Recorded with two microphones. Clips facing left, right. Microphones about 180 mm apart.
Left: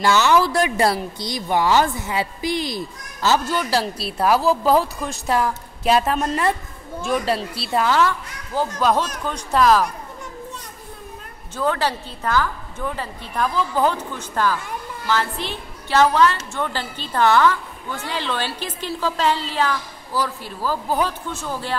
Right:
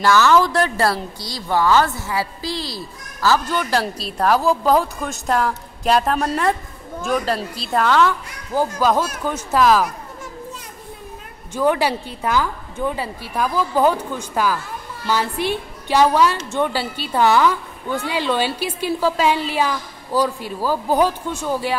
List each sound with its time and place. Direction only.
0.0 s a woman's voice: 15° left (ahead or behind)
3.4 s a woman's voice: 10° left (ahead or behind)
11.5 s a woman's voice: 15° right (ahead or behind)